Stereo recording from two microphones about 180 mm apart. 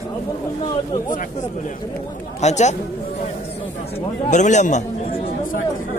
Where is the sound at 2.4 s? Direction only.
40° left (ahead or behind).